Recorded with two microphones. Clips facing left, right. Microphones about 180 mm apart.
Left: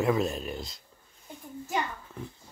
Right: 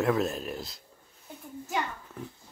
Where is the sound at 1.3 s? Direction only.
Centre (ahead or behind).